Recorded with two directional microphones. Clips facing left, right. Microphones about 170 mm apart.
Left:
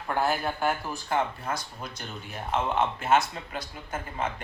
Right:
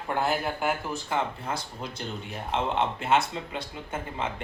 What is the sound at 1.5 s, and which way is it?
Speech, 30° right (ahead or behind).